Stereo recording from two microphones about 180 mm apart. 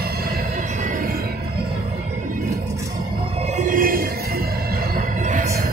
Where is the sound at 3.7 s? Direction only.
50° right (ahead or behind).